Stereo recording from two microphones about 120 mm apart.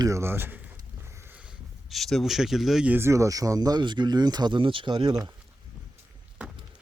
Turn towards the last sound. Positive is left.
turn(degrees=-40)  # may be behind; listen again after turning